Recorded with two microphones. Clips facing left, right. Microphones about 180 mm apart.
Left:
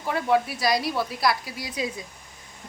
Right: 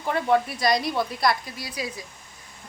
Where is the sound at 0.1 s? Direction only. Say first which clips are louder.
Right 1 dB; 5° left (ahead or behind).